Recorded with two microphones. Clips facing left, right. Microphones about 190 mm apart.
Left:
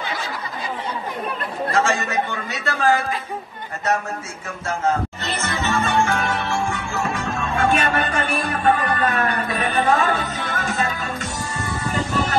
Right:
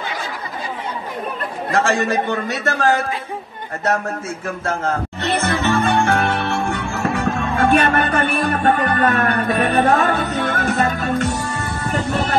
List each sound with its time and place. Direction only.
1.7 s a man's voice: 60° right (ahead or behind)
5.2 s music: 60° right (ahead or behind)